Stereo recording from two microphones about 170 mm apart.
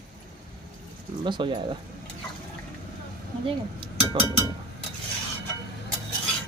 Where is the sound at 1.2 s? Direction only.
30° right (ahead or behind).